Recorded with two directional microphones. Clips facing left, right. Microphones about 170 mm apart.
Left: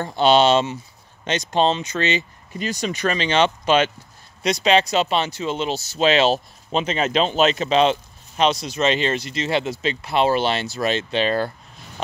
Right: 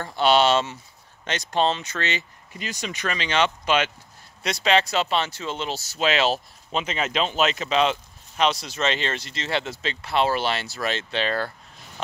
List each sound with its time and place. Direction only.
0.0 s speech: 20° left (ahead or behind)
2.5 s speech: 35° left (ahead or behind)
4.4 s speech: 20° left (ahead or behind)